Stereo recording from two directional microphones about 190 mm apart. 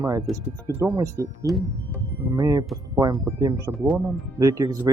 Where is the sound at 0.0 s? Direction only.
20° right (ahead or behind).